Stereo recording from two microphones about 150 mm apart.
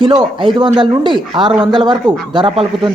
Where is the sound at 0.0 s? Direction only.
30° right (ahead or behind).